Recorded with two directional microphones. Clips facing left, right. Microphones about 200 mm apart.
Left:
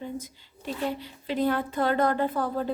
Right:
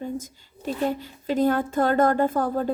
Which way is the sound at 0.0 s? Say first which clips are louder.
Right 4 dB; 45° right (ahead or behind).